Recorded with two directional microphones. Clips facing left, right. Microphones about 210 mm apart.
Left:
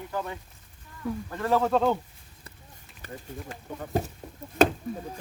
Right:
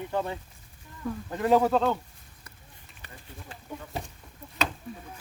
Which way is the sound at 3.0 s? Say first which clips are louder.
Left 9 dB; 40° left (ahead or behind).